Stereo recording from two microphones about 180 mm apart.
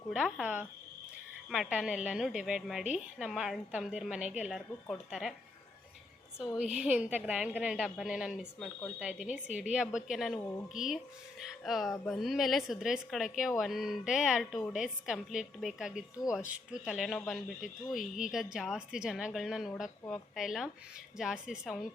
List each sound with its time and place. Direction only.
0.1 s a woman's voice: 5° right (ahead or behind)
6.6 s a woman's voice: 5° right (ahead or behind)